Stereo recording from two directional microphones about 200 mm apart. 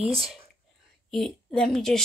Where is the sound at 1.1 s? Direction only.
Centre (ahead or behind).